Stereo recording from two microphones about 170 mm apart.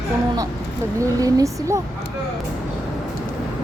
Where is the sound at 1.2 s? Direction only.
20° right (ahead or behind).